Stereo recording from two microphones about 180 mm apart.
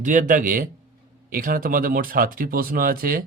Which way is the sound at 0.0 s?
45° right (ahead or behind).